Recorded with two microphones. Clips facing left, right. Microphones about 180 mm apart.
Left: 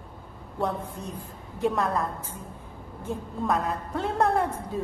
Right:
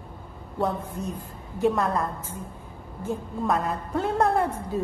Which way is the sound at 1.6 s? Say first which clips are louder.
Right 2 dB; centre (ahead or behind).